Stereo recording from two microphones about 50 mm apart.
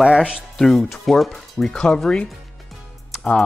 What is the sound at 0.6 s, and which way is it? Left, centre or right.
Speech, centre.